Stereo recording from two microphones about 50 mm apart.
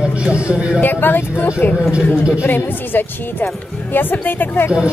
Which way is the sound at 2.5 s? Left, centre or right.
Left.